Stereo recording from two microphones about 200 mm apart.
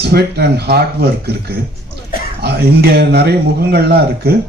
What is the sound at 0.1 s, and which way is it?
Speech, 55° right (ahead or behind).